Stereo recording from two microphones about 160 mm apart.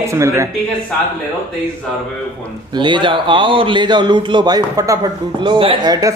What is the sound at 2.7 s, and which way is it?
Speech, 30° right (ahead or behind).